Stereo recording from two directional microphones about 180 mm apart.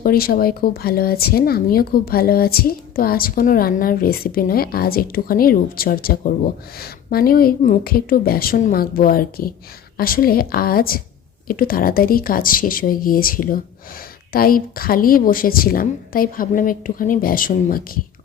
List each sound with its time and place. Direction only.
0.0 s a woman's voice: 55° left (ahead or behind)